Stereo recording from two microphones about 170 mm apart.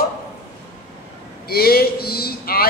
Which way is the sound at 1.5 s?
65° left (ahead or behind).